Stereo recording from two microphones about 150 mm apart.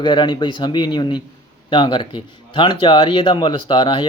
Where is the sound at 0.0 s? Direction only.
30° left (ahead or behind).